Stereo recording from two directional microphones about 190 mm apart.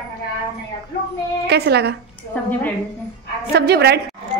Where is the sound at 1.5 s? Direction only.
60° right (ahead or behind).